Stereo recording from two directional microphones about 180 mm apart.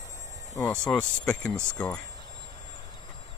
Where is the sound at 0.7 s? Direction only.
5° left (ahead or behind).